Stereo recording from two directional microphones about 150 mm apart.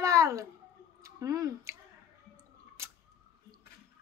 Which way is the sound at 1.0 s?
20° right (ahead or behind).